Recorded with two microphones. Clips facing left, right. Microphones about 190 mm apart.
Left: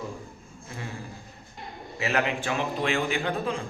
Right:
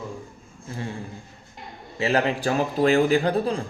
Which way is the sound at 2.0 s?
30° right (ahead or behind).